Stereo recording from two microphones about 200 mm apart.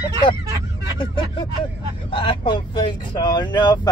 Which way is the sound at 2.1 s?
25° left (ahead or behind).